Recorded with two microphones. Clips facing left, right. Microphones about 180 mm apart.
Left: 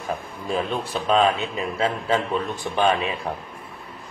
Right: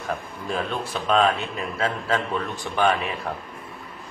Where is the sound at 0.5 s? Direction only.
Centre (ahead or behind).